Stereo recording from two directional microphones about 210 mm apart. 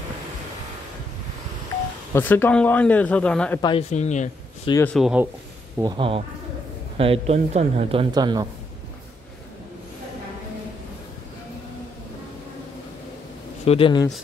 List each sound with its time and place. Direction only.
2.1 s speech: 10° left (ahead or behind)
3.9 s speech: 35° left (ahead or behind)
4.8 s speech: centre (ahead or behind)
5.8 s speech: 20° right (ahead or behind)
13.7 s speech: 25° left (ahead or behind)